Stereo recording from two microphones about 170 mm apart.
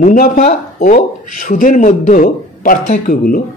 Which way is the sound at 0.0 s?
50° left (ahead or behind).